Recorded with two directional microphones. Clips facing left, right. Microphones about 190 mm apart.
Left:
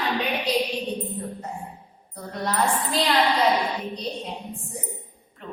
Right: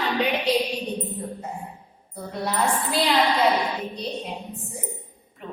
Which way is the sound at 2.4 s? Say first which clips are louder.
Even; 10° right (ahead or behind).